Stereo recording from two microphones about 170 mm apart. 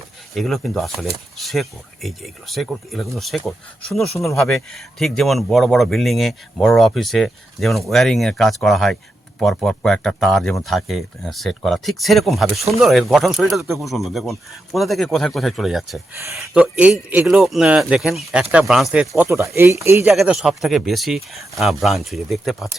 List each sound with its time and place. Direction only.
0.3 s speech: centre (ahead or behind); by 20.1 s 15° right (ahead or behind)
20.1 s speech: 5° right (ahead or behind)